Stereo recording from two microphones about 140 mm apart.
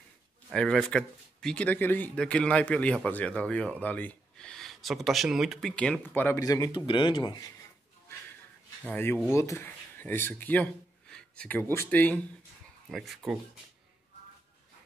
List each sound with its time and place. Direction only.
0.5 s speech: 5° left (ahead or behind)
6.4 s a man's voice: 25° left (ahead or behind)
8.8 s speech: 15° left (ahead or behind)